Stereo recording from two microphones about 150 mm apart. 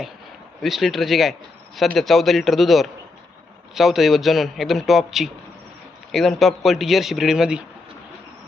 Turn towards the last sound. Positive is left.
turn(degrees=-5)  # may be behind; listen again after turning